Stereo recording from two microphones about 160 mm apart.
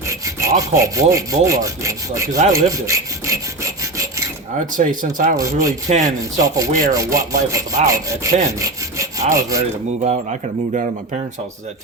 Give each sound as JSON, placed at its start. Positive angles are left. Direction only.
{"t": 0.1, "sound": "rub", "side_deg": -20}
{"t": 4.6, "sound": "speech", "side_deg": -55}
{"t": 5.4, "sound": "rub", "side_deg": -20}
{"t": 5.9, "sound": "speech", "side_deg": -50}
{"t": 6.1, "sound": "rub", "side_deg": -20}
{"t": 8.4, "sound": "wood", "side_deg": -20}